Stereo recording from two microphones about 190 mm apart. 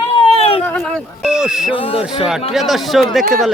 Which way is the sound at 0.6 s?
5° left (ahead or behind).